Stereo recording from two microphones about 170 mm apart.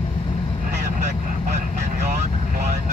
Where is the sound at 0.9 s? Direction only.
50° right (ahead or behind).